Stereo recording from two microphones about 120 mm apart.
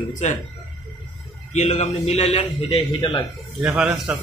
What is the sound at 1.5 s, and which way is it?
Speech, 75° left (ahead or behind).